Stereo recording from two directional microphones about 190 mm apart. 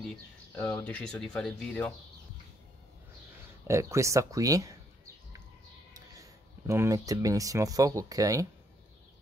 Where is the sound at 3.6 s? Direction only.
15° right (ahead or behind).